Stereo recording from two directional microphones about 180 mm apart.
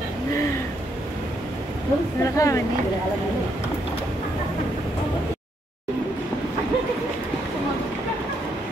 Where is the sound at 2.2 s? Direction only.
15° left (ahead or behind).